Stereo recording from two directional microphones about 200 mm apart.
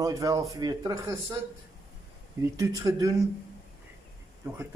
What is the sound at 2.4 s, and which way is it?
Speech, 15° right (ahead or behind).